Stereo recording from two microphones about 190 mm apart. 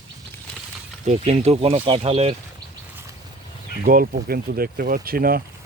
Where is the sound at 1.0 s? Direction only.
35° right (ahead or behind).